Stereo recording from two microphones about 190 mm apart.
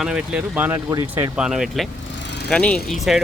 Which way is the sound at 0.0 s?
5° right (ahead or behind).